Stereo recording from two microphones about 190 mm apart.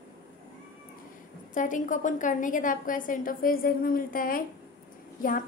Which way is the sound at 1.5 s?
45° left (ahead or behind).